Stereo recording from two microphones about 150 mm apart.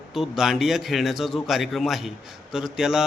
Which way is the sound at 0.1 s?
Centre (ahead or behind).